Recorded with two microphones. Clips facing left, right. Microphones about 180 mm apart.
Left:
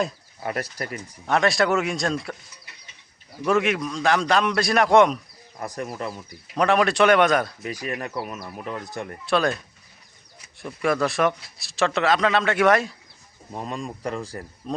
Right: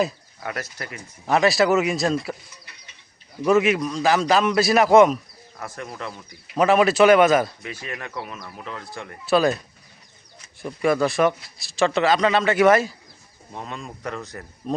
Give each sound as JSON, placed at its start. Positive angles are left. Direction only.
{"t": 0.4, "sound": "speech", "side_deg": 35}
{"t": 1.3, "sound": "a man's voice", "side_deg": -5}
{"t": 3.4, "sound": "a man's voice", "side_deg": 0}
{"t": 5.5, "sound": "speech", "side_deg": 35}
{"t": 6.6, "sound": "a man's voice", "side_deg": -5}
{"t": 7.9, "sound": "speech", "side_deg": 35}
{"t": 8.4, "sound": "speech", "side_deg": 15}
{"t": 9.2, "sound": "a man's voice", "side_deg": -5}
{"t": 10.6, "sound": "a man's voice", "side_deg": 0}
{"t": 13.6, "sound": "speech", "side_deg": 35}
{"t": 14.6, "sound": "speech", "side_deg": -5}